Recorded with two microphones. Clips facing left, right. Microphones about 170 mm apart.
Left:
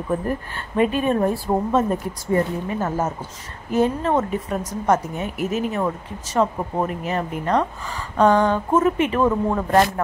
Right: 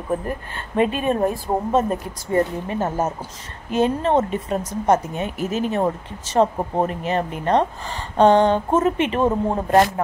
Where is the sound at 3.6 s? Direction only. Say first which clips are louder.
Even; 20° right (ahead or behind).